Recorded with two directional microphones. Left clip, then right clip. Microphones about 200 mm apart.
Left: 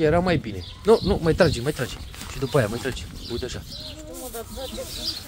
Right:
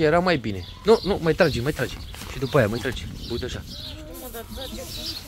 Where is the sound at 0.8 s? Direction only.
20° left (ahead or behind).